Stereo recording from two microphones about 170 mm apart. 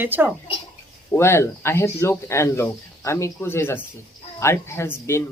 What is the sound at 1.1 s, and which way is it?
Speech, 15° left (ahead or behind).